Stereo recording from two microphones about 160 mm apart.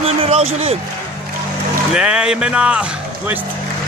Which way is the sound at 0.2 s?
40° right (ahead or behind).